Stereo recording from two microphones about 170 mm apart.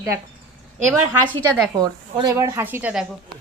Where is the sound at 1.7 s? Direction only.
20° right (ahead or behind).